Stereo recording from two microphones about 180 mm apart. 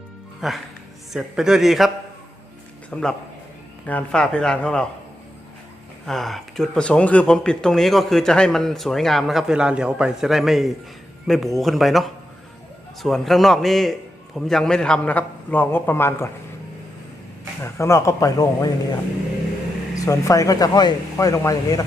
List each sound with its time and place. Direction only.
0.4 s speech: centre (ahead or behind)
2.9 s speech: 5° left (ahead or behind)
6.1 s a man's voice: centre (ahead or behind)
17.6 s a man's voice: 15° left (ahead or behind)
20.1 s speech: 20° left (ahead or behind)